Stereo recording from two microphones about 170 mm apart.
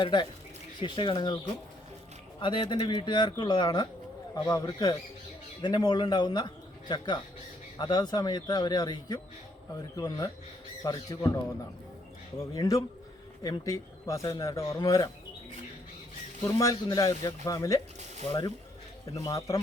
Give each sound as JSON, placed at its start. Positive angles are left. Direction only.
{"t": 0.0, "sound": "a man's voice", "side_deg": 25}
{"t": 2.4, "sound": "a man's voice", "side_deg": 30}
{"t": 10.8, "sound": "a man's voice", "side_deg": 20}
{"t": 12.5, "sound": "a man's voice", "side_deg": 20}
{"t": 16.4, "sound": "a man's voice", "side_deg": 20}
{"t": 19.0, "sound": "a man's voice", "side_deg": 20}